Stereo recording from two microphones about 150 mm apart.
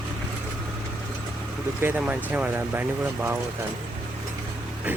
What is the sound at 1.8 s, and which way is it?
Speech, 10° right (ahead or behind).